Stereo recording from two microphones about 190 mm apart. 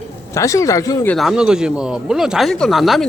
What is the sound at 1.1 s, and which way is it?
Speech, centre (ahead or behind).